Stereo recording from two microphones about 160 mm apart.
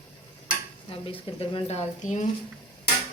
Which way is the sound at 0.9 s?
35° left (ahead or behind).